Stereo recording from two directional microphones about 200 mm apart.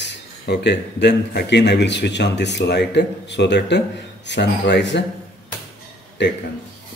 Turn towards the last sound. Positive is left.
turn(degrees=60)  # may be behind; listen again after turning